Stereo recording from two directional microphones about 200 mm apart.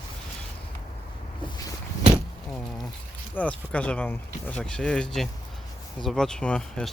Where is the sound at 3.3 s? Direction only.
5° left (ahead or behind).